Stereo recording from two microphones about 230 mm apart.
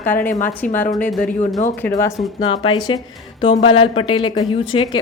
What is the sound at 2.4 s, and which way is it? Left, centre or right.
A woman's voice, left.